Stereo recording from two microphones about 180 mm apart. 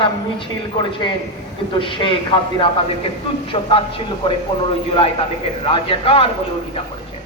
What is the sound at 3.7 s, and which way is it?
Speech, 30° left (ahead or behind).